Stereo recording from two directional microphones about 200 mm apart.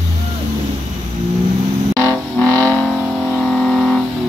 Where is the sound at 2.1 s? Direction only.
5° left (ahead or behind).